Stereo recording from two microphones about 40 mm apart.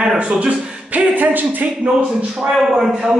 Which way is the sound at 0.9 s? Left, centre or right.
Right.